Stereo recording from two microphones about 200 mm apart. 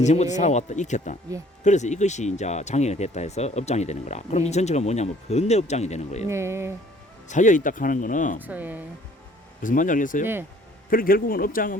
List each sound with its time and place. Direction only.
0.0 s speech: 35° left (ahead or behind)
6.2 s speech: 15° right (ahead or behind)
7.3 s speech: 40° left (ahead or behind)
8.4 s speech: 10° right (ahead or behind)
9.6 s a man's voice: 40° left (ahead or behind)